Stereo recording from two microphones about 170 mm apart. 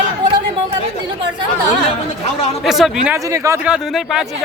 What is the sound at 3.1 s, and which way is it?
Speech, 20° right (ahead or behind).